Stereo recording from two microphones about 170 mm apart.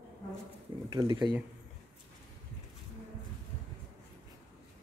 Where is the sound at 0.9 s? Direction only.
25° right (ahead or behind).